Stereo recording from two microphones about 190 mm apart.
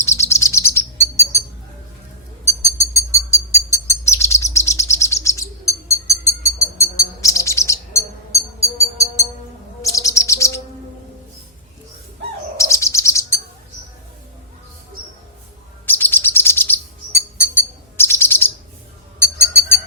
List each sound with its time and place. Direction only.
0.0 s chirp: 15° left (ahead or behind)
2.7 s a sound: 15° left (ahead or behind)
3.7 s bird: 15° left (ahead or behind)
9.8 s chirp: 15° left (ahead or behind)
12.5 s bird: 15° left (ahead or behind)
15.9 s chirp: 10° left (ahead or behind)